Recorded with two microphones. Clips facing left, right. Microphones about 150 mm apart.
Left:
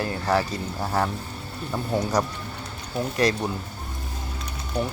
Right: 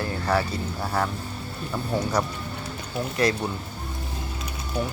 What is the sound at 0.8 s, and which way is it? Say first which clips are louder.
Speech: left 2 dB; 15° left (ahead or behind).